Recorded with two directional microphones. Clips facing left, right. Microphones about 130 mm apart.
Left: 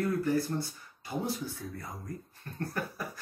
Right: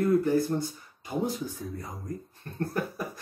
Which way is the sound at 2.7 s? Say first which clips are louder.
Right 5 dB; 20° right (ahead or behind).